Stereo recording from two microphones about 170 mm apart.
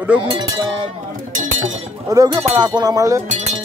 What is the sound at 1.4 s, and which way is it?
Chink, 50° right (ahead or behind).